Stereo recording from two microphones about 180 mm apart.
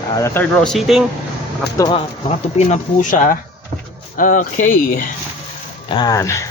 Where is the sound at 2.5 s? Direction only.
45° left (ahead or behind).